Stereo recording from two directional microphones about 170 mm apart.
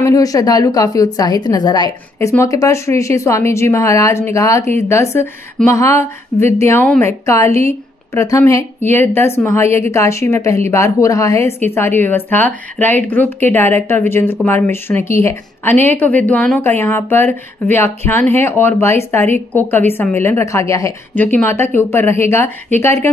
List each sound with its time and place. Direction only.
0.0 s a woman's voice: 20° left (ahead or behind)